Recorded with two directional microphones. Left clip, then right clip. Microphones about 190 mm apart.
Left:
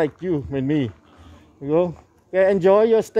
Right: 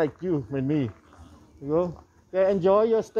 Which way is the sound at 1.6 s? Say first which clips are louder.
Left 6 dB; 30° left (ahead or behind).